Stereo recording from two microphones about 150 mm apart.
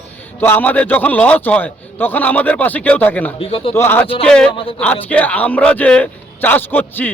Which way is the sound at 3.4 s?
40° left (ahead or behind).